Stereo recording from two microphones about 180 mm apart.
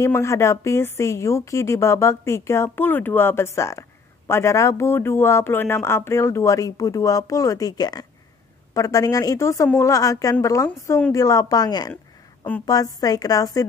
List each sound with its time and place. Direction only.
0.0 s a woman's voice: 15° left (ahead or behind)